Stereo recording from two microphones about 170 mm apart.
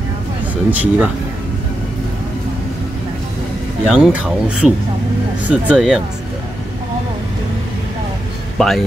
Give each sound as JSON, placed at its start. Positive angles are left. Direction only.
{"t": 0.7, "sound": "speech", "side_deg": -10}
{"t": 3.8, "sound": "speech", "side_deg": -5}
{"t": 8.5, "sound": "speech", "side_deg": 0}